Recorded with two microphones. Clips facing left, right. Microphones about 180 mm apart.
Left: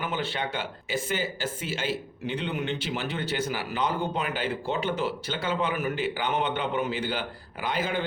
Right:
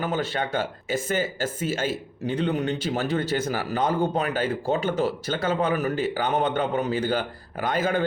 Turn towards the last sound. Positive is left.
turn(degrees=-45)  # may be behind; listen again after turning